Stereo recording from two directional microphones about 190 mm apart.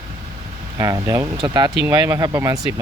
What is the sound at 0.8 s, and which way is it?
Speech, 20° right (ahead or behind).